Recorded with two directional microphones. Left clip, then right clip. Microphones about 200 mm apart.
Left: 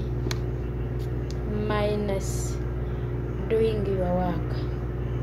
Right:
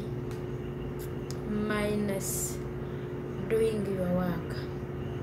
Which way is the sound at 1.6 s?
20° right (ahead or behind).